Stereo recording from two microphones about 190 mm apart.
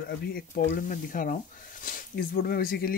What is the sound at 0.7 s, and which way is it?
Speech, 45° left (ahead or behind).